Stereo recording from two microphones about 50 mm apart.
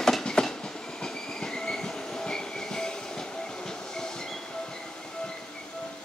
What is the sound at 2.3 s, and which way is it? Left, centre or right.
Train, centre.